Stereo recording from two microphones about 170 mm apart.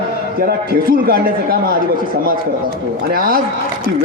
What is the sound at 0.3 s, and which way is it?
A man's voice, 60° right (ahead or behind).